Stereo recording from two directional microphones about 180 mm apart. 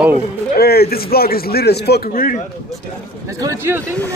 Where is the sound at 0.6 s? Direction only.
60° left (ahead or behind).